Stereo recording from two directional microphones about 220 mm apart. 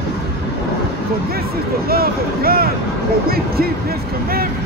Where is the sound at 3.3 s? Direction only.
45° right (ahead or behind).